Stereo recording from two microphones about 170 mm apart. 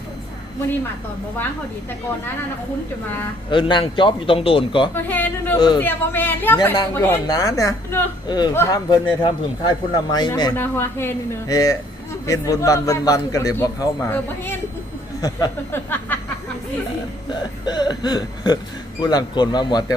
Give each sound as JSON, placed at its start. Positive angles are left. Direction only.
{"t": 3.5, "sound": "a man's voice", "side_deg": 30}
{"t": 5.0, "sound": "a woman's voice", "side_deg": 10}
{"t": 5.5, "sound": "a man's voice", "side_deg": 25}
{"t": 5.8, "sound": "a woman's voice", "side_deg": 10}
{"t": 10.6, "sound": "a woman's voice", "side_deg": 15}
{"t": 17.7, "sound": "a man's voice", "side_deg": 25}